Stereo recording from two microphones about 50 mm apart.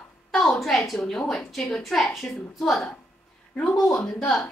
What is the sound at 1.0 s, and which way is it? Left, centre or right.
A woman's voice, centre.